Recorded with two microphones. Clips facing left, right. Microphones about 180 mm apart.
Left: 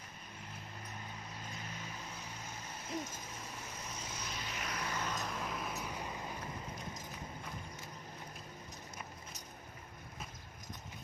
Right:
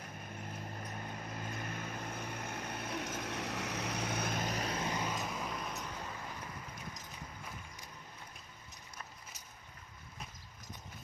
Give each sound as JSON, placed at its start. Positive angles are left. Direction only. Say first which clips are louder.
{"t": 1.5, "sound": "vehicle", "louder": "right 5 dB", "side_deg": -55}